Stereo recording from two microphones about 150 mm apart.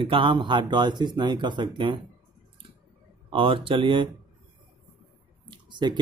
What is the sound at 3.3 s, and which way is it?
Speech, 35° right (ahead or behind).